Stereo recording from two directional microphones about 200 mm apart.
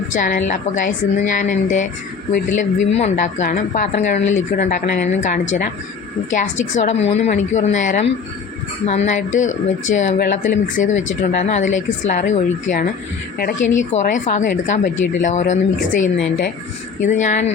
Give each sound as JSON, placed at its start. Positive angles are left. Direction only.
{"t": 0.1, "sound": "a woman's voice", "side_deg": 40}